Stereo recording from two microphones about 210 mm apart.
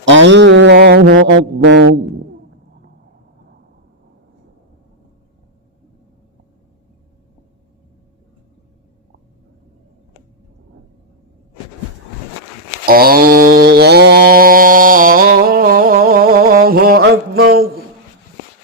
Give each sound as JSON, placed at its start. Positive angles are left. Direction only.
{"t": 0.0, "sound": "music", "side_deg": -60}
{"t": 12.8, "sound": "mantra", "side_deg": -45}